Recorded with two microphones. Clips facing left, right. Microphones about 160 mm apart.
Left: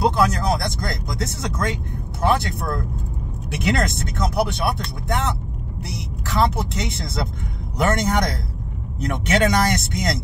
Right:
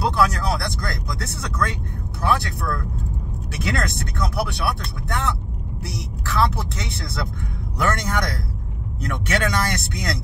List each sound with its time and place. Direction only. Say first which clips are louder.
0.0 s speech: left 2 dB; 20° left (ahead or behind)